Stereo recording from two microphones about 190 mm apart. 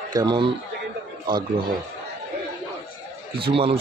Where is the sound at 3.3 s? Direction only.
30° right (ahead or behind).